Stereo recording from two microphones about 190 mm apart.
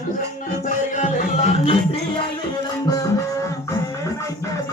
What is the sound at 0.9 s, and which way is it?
Music, 35° left (ahead or behind).